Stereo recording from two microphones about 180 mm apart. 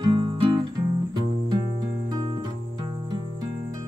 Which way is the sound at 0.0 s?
25° right (ahead or behind).